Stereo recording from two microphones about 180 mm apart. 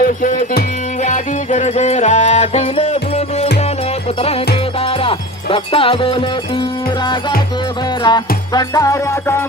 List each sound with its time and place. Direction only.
0.2 s music: 45° left (ahead or behind); by 9.4 s 15° left (ahead or behind)